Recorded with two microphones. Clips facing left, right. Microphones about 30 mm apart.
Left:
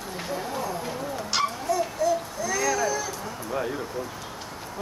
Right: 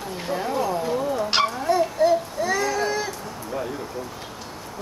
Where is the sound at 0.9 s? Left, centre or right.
Right.